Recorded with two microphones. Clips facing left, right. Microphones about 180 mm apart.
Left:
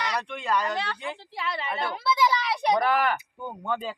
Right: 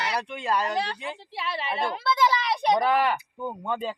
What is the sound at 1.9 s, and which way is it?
Speech, centre (ahead or behind).